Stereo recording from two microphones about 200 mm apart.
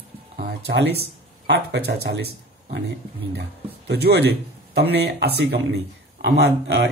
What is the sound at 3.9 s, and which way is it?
Speech, 55° right (ahead or behind).